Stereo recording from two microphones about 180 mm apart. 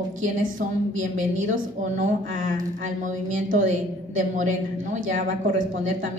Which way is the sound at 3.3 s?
90° right.